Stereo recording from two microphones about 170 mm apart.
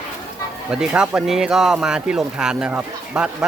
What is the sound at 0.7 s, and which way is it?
Speech, 5° right (ahead or behind).